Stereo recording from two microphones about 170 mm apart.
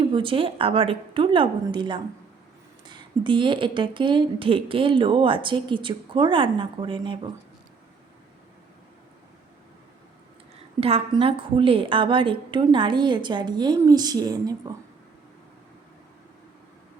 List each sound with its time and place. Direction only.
0.1 s a woman's voice: 30° right (ahead or behind)
10.8 s speech: 35° right (ahead or behind)